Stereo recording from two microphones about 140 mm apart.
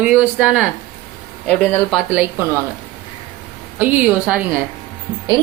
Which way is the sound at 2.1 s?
10° right (ahead or behind).